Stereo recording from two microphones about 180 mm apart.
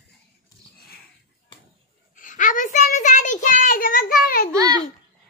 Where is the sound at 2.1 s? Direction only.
45° left (ahead or behind).